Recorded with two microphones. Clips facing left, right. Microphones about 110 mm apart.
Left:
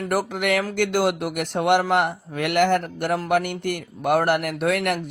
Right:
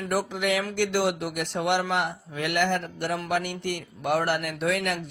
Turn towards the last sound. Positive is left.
turn(degrees=55)  # may be behind; listen again after turning